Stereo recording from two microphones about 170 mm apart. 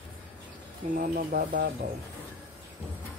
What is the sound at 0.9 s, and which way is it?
Speech, 55° right (ahead or behind).